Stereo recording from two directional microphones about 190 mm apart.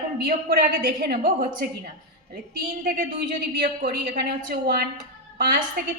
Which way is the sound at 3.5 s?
60° right (ahead or behind).